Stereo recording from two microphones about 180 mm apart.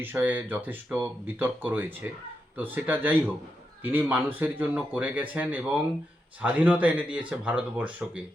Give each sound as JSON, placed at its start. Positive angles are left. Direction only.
{"t": 0.0, "sound": "speech", "side_deg": -10}